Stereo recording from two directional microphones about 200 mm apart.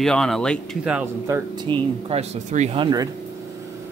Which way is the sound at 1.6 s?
25° right (ahead or behind).